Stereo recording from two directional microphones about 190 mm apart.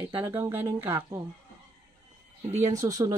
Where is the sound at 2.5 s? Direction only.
15° right (ahead or behind).